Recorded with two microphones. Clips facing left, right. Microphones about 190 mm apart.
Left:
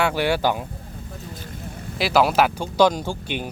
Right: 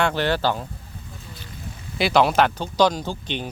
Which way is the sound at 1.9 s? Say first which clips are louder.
Even; centre (ahead or behind).